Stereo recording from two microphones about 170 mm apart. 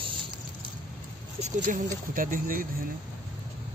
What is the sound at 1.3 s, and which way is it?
Speech, 45° right (ahead or behind).